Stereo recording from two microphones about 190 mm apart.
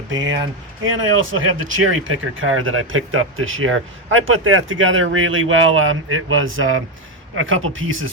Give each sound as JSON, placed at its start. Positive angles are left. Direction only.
{"t": 0.1, "sound": "speech", "side_deg": -85}